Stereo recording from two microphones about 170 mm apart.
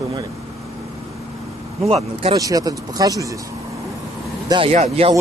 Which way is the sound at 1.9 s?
35° right (ahead or behind).